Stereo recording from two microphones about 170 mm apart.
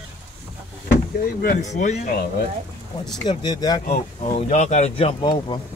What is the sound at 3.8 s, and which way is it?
Speech, 40° left (ahead or behind).